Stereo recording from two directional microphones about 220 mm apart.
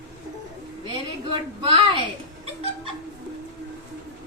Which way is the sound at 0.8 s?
25° right (ahead or behind).